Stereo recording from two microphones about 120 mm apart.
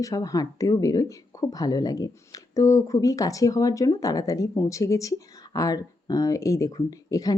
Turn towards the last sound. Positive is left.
turn(degrees=30)  # may be behind; listen again after turning